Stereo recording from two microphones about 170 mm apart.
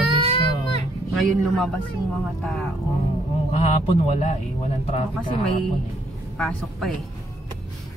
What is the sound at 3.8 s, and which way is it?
Speech, 40° left (ahead or behind).